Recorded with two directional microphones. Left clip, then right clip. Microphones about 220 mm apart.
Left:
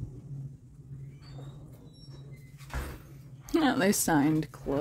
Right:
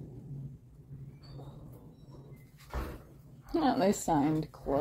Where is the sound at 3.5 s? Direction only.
35° left (ahead or behind).